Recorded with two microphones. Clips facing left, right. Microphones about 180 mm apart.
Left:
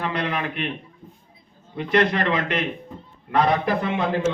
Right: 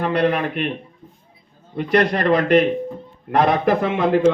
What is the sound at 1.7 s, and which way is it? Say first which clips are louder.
Speech: right 3 dB; 50° right (ahead or behind).